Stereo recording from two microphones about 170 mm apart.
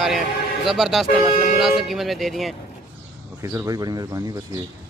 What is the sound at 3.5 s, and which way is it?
Speech, 20° right (ahead or behind).